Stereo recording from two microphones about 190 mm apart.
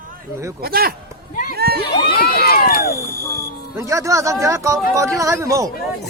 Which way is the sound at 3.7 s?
15° right (ahead or behind).